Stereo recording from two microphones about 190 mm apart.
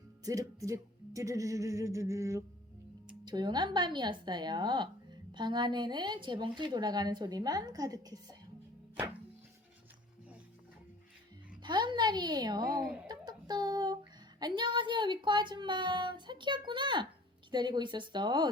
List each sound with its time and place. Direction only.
0.3 s music: 15° right (ahead or behind)
3.1 s a woman's voice: 20° right (ahead or behind)
11.6 s a woman's voice: 25° right (ahead or behind)
13.1 s a sound: 20° right (ahead or behind)
17.5 s a woman's voice: 25° right (ahead or behind)